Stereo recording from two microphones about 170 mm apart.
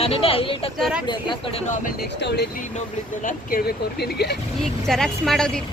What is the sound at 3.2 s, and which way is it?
Speech, 65° left (ahead or behind).